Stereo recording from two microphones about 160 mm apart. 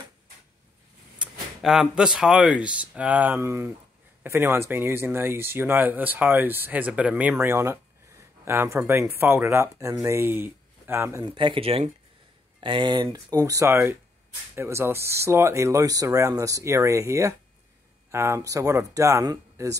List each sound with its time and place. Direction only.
1.1 s speech: 5° right (ahead or behind)
11.2 s speech: 30° right (ahead or behind)